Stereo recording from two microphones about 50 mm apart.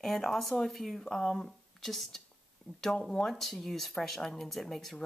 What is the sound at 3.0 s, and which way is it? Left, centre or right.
Speech, centre.